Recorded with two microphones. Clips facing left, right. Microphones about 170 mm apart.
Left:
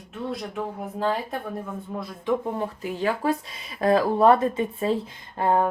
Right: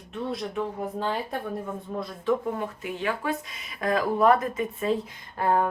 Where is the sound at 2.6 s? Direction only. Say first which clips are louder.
Left 3 dB; 35° left (ahead or behind).